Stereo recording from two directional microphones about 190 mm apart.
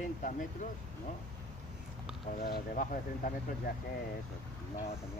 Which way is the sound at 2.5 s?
45° left (ahead or behind).